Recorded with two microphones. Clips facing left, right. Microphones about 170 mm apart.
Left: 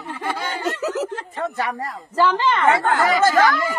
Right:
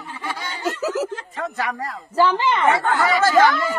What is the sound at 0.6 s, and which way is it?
Speech, 5° right (ahead or behind).